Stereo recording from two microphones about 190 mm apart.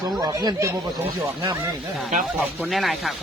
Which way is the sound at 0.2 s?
20° right (ahead or behind).